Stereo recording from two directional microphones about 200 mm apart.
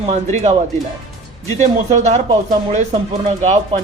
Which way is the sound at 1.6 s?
35° right (ahead or behind).